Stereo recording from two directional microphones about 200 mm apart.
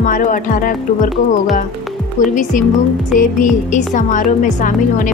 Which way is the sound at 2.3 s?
40° left (ahead or behind).